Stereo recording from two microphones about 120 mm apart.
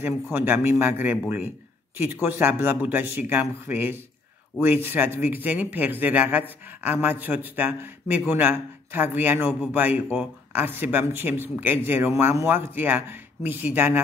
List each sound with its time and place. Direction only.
0.0 s speech: 15° right (ahead or behind)
2.2 s speech: 20° right (ahead or behind)